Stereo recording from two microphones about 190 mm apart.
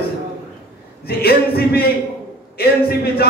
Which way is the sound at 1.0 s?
55° left (ahead or behind).